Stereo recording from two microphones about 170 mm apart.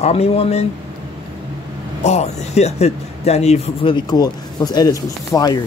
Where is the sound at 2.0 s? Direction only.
40° left (ahead or behind); by 5.6 s 25° left (ahead or behind).